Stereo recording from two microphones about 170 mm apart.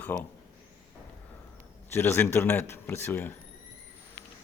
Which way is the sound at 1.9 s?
15° left (ahead or behind).